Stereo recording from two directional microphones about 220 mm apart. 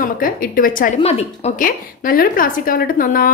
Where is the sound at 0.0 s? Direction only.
40° left (ahead or behind).